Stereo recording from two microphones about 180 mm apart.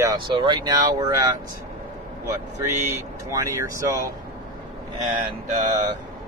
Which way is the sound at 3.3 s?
20° right (ahead or behind).